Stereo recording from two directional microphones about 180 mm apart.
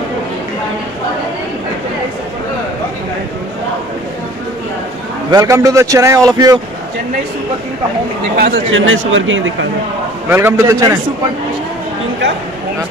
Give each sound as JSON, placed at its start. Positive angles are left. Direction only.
{"t": 5.3, "sound": "a man's voice", "side_deg": -20}
{"t": 8.4, "sound": "speech", "side_deg": -75}
{"t": 10.3, "sound": "a man's voice", "side_deg": -15}